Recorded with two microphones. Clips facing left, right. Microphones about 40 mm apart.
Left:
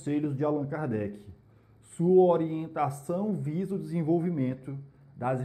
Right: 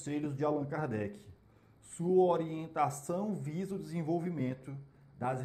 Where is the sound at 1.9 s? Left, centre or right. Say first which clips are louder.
Left 7 dB; left.